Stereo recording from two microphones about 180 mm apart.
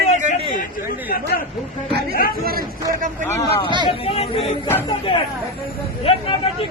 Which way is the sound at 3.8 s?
30° left (ahead or behind).